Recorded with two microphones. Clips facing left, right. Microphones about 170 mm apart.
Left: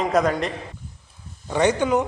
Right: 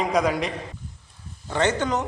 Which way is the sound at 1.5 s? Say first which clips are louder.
Left 4 dB; 15° left (ahead or behind).